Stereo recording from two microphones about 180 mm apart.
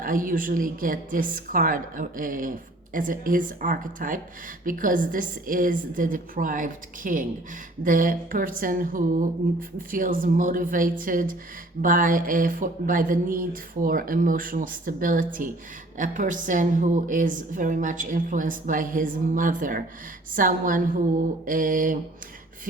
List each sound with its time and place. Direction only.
0.0 s a woman's voice: 50° right (ahead or behind)